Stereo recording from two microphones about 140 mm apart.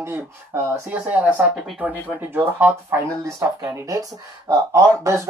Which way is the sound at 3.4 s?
25° right (ahead or behind).